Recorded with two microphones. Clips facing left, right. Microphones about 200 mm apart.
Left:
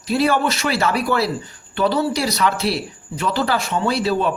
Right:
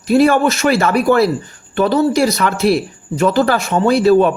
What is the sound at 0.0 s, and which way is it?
A man's voice, 50° right (ahead or behind).